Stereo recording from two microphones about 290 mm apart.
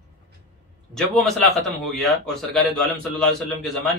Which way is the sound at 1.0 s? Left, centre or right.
Centre.